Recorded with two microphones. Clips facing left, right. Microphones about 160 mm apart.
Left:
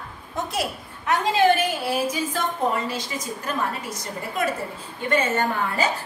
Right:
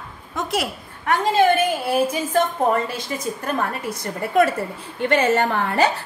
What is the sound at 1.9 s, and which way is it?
Speech, 55° right (ahead or behind).